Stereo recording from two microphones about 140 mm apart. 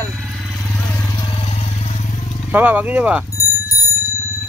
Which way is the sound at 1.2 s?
45° left (ahead or behind).